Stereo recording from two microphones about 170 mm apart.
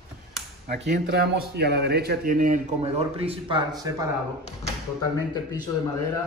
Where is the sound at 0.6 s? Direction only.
80° right; by 2.6 s 50° right (ahead or behind).